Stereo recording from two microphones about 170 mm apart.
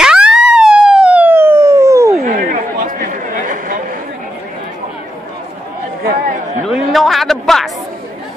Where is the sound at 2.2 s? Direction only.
55° right (ahead or behind).